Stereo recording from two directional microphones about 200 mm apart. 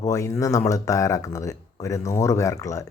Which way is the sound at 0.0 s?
15° left (ahead or behind).